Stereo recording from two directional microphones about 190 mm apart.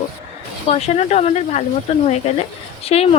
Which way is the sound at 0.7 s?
35° left (ahead or behind).